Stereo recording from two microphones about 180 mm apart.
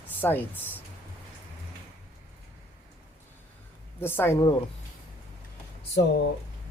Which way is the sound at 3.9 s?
10° left (ahead or behind).